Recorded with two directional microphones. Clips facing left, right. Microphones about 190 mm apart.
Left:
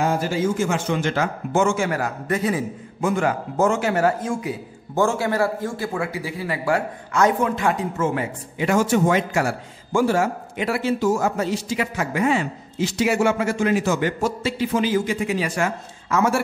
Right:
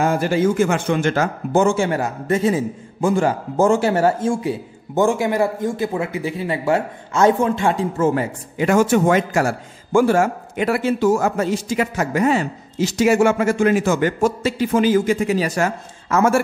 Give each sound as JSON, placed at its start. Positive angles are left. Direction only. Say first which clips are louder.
{"t": 0.0, "sound": "speech", "louder": "right 4 dB", "side_deg": -60}
{"t": 5.0, "sound": "a man's voice", "louder": "right 3 dB", "side_deg": -15}